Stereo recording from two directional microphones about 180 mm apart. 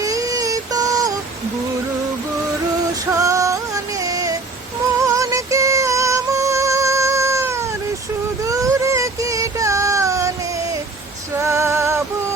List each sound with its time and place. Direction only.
0.0 s synthetic singing: 20° right (ahead or behind)
3.1 s music: 15° right (ahead or behind)
4.0 s a sound: 20° right (ahead or behind)
4.9 s music: 15° right (ahead or behind)
8.4 s child singing: 15° right (ahead or behind)
11.3 s music: 15° right (ahead or behind)